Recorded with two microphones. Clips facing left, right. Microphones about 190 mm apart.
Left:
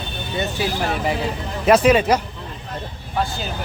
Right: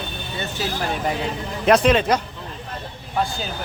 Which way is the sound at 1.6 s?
5° left (ahead or behind).